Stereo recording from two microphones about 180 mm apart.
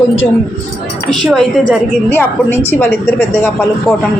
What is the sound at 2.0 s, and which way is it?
A woman's voice, 10° left (ahead or behind).